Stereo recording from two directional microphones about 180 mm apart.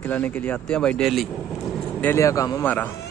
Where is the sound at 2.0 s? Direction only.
15° left (ahead or behind).